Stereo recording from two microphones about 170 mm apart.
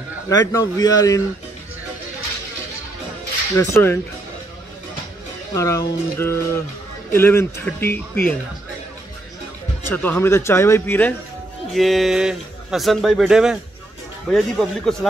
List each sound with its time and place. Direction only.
0.3 s a man's voice: 20° left (ahead or behind)
3.5 s speech: 15° left (ahead or behind)
5.5 s speech: 20° left (ahead or behind)
9.8 s speech: 10° left (ahead or behind)
11.7 s speech: centre (ahead or behind)